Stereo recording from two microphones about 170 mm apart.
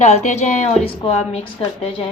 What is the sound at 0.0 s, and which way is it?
A woman's voice, 40° left (ahead or behind).